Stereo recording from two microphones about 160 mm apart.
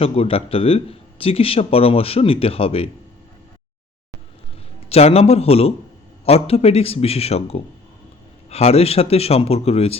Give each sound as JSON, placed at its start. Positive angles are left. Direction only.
{"t": 0.0, "sound": "speech", "side_deg": 35}
{"t": 4.9, "sound": "speech", "side_deg": 40}